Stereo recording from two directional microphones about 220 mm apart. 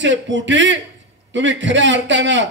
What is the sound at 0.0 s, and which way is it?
A man's voice, 55° right (ahead or behind).